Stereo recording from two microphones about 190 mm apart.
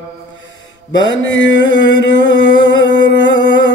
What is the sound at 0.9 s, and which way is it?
Mantra, 75° left (ahead or behind).